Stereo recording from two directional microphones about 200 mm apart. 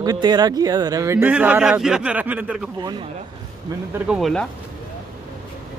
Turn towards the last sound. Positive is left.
turn(degrees=0)  # may be behind; listen again after turning